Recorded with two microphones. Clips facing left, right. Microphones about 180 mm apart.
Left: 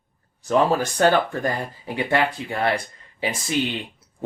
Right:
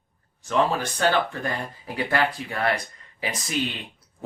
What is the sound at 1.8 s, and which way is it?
Speech, 25° left (ahead or behind).